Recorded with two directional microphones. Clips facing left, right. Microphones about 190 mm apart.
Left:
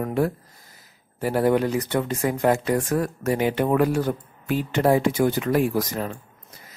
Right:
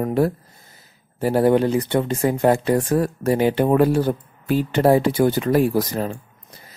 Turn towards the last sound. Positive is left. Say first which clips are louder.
# right 4 dB
turn(degrees=-30)  # may be behind; listen again after turning